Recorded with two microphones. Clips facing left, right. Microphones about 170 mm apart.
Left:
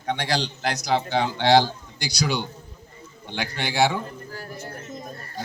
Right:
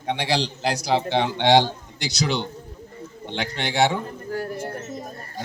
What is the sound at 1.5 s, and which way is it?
Speech, 25° right (ahead or behind).